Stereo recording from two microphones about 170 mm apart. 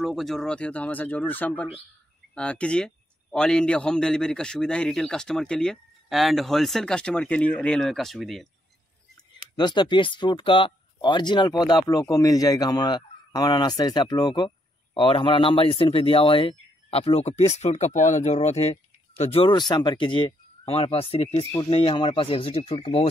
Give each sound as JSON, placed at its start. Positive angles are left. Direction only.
{"t": 0.0, "sound": "a man's voice", "side_deg": 0}
{"t": 9.6, "sound": "speech", "side_deg": 25}